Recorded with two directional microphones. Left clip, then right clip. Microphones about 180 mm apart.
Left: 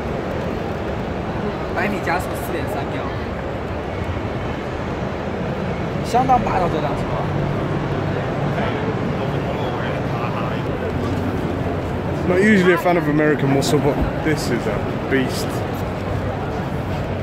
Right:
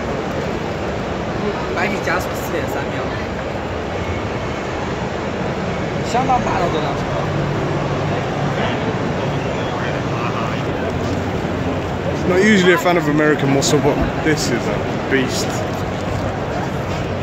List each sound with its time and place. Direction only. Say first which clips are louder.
12.4 s speech: right 2 dB; 5° left (ahead or behind)